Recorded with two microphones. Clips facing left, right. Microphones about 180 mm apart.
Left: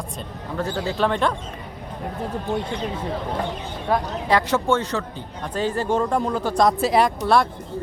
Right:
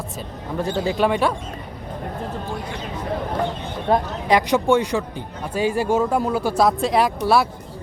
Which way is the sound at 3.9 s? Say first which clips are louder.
Right 2 dB; 15° right (ahead or behind).